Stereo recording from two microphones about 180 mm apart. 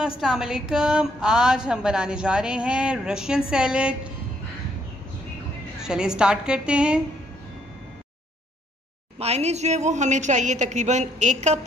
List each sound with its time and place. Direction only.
0.2 s a woman's voice: 5° right (ahead or behind)
5.8 s a woman's voice: 5° right (ahead or behind)
9.2 s a woman's voice: 35° right (ahead or behind)